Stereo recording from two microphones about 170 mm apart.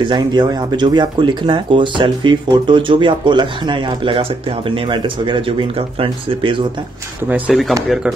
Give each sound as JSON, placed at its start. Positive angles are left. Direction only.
{"t": 0.0, "sound": "speech", "side_deg": -25}
{"t": 7.2, "sound": "speech", "side_deg": -10}